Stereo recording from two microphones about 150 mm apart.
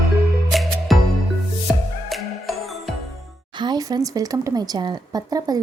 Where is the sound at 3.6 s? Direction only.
25° right (ahead or behind).